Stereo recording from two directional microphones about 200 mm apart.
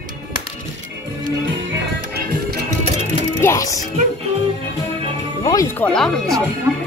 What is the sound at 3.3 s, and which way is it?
Speech, 15° left (ahead or behind).